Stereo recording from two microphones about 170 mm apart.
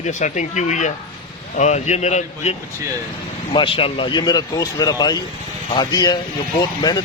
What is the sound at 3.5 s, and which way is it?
Speech, 30° left (ahead or behind).